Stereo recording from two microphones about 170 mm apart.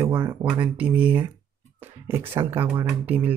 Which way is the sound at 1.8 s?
10° right (ahead or behind).